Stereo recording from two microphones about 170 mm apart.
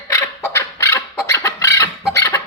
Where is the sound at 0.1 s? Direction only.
20° left (ahead or behind).